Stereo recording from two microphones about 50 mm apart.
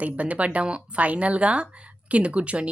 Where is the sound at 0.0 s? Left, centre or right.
Right.